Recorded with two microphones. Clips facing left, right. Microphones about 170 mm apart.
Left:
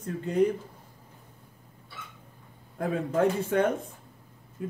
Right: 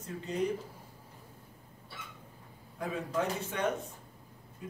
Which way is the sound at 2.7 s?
55° left (ahead or behind).